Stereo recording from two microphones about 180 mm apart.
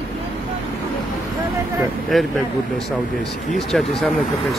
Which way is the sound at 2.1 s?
Centre (ahead or behind).